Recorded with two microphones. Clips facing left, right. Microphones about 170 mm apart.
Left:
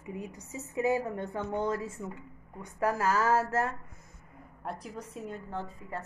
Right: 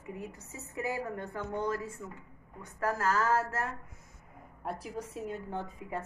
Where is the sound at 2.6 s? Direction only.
10° left (ahead or behind).